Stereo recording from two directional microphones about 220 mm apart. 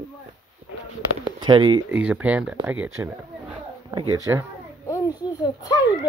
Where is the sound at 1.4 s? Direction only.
20° right (ahead or behind).